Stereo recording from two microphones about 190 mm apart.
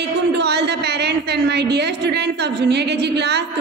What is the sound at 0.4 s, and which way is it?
A woman's voice, 60° right (ahead or behind).